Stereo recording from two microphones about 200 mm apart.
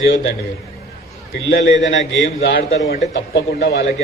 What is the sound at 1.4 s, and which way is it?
A man's voice, 65° left (ahead or behind).